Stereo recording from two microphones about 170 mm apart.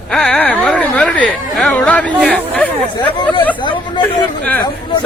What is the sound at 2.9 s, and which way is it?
Speech, 25° left (ahead or behind).